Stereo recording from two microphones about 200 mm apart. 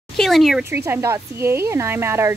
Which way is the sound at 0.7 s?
10° right (ahead or behind).